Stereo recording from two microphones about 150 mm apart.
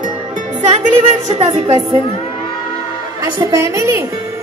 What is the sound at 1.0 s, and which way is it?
Speech, 45° right (ahead or behind).